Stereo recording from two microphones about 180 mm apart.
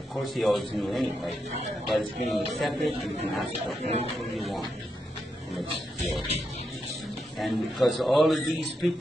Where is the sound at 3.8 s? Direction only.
35° right (ahead or behind).